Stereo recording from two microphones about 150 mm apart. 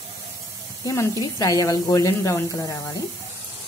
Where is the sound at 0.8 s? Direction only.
25° left (ahead or behind).